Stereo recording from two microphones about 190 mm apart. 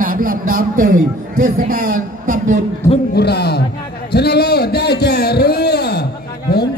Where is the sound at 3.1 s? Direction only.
60° left (ahead or behind).